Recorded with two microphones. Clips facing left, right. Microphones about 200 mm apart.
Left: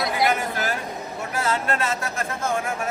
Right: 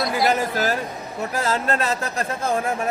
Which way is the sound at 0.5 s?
35° right (ahead or behind).